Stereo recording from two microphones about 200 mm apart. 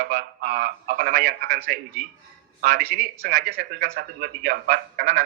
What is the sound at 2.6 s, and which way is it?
A man's voice, 45° right (ahead or behind).